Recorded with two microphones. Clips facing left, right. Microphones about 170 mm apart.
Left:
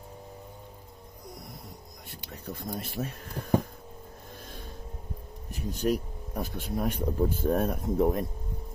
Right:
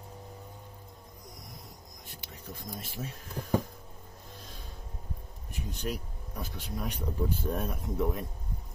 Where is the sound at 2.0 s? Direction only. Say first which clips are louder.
Left 6 dB; 65° left (ahead or behind).